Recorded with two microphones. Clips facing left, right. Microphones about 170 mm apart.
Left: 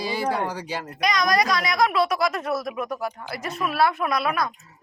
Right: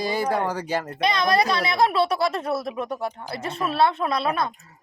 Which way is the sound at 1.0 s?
30° right (ahead or behind).